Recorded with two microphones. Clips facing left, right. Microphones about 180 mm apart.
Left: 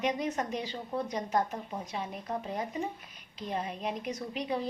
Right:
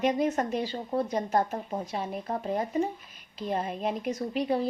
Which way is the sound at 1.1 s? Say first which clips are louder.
Right 2 dB; 50° right (ahead or behind).